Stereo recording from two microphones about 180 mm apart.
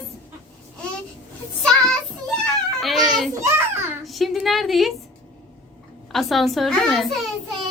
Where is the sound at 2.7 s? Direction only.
Centre (ahead or behind).